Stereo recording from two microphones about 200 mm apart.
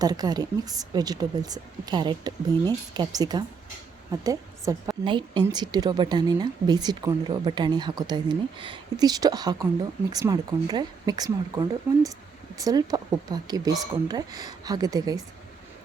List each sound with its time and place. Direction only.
0.0 s a woman's voice: 20° right (ahead or behind)